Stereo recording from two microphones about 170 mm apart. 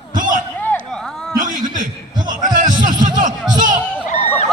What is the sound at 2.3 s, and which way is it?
Music, 50° right (ahead or behind).